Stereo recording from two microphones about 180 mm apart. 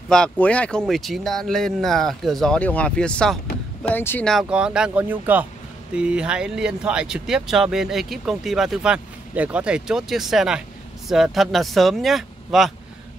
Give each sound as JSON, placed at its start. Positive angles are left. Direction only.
{"t": 0.1, "sound": "speech", "side_deg": 5}
{"t": 4.3, "sound": "speech", "side_deg": -5}